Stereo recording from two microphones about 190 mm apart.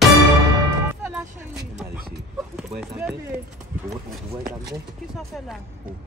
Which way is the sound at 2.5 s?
5° right (ahead or behind).